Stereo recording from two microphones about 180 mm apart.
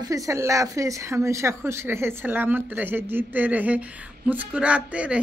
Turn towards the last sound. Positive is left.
turn(degrees=-5)  # may be behind; listen again after turning